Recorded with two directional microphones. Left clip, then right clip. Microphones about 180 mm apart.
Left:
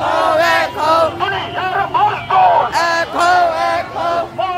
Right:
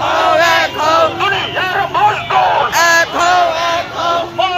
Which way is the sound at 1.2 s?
55° left (ahead or behind).